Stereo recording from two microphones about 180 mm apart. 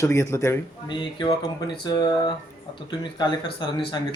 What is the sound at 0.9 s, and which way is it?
Speech, 25° left (ahead or behind).